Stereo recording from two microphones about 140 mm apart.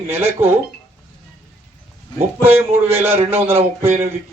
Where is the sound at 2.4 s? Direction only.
15° right (ahead or behind).